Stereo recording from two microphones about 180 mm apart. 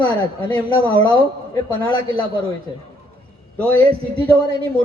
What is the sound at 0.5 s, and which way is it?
Speech, 30° right (ahead or behind).